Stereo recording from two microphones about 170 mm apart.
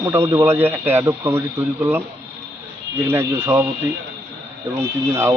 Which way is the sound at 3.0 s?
15° right (ahead or behind).